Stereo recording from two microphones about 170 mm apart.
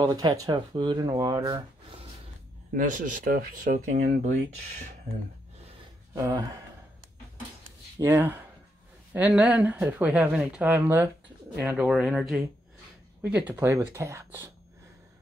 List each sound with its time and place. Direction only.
0.0 s speech: 20° right (ahead or behind)
2.7 s speech: 50° right (ahead or behind)
6.1 s speech: 20° right (ahead or behind)
8.0 s speech: 15° right (ahead or behind)